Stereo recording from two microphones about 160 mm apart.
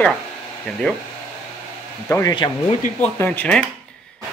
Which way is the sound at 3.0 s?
10° left (ahead or behind).